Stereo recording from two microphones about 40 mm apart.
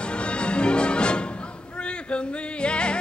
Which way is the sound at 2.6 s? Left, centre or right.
Left.